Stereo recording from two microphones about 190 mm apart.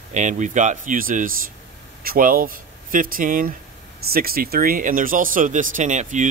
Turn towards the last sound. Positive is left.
turn(degrees=-40)  # may be behind; listen again after turning